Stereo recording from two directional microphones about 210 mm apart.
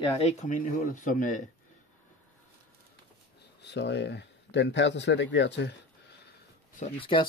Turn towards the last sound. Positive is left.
turn(degrees=25)  # may be behind; listen again after turning